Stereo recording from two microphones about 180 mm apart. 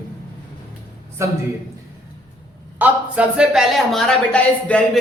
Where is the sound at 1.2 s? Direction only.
15° right (ahead or behind).